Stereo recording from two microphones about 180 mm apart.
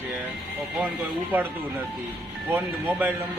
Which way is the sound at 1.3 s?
10° right (ahead or behind).